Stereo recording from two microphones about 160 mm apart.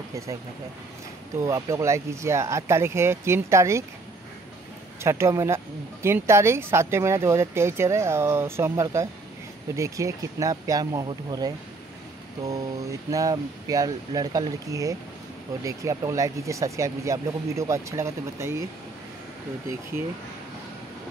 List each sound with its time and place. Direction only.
1.4 s speech: 20° right (ahead or behind)
5.0 s speech: 15° right (ahead or behind)